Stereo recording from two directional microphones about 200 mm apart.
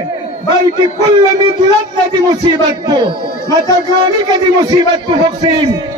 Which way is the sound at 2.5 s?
20° right (ahead or behind).